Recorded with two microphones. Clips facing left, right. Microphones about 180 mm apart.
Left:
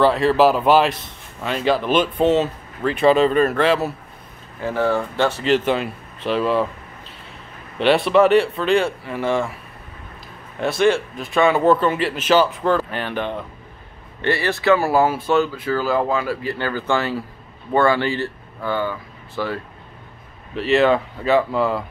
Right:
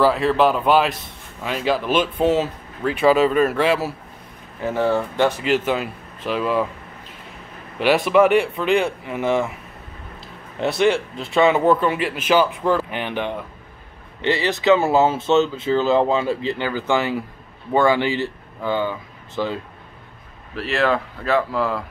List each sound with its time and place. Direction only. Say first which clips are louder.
0.0 s speech: left 2 dB; centre (ahead or behind)
4.6 s speech: even; 20° right (ahead or behind)
7.8 s speech: left 1 dB; 10° right (ahead or behind)
10.6 s speech: left 1 dB; 20° right (ahead or behind)
20.5 s speech: left 4 dB; centre (ahead or behind)